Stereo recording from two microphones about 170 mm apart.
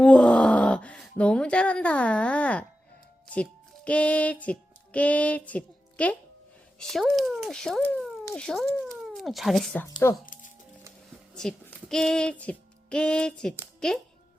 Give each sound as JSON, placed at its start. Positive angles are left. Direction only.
{"t": 0.0, "sound": "a sound", "side_deg": 5}
{"t": 3.2, "sound": "music", "side_deg": 5}
{"t": 6.7, "sound": "speech", "side_deg": 0}
{"t": 9.8, "sound": "speech", "side_deg": 15}
{"t": 11.3, "sound": "speech", "side_deg": 5}